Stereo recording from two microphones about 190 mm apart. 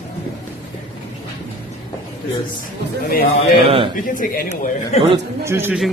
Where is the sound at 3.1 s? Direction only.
55° left (ahead or behind).